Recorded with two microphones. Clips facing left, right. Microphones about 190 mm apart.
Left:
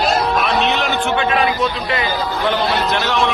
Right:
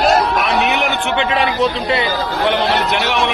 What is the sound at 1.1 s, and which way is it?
Speech, 30° right (ahead or behind).